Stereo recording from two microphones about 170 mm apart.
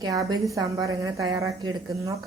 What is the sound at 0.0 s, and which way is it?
A woman's voice, 20° right (ahead or behind).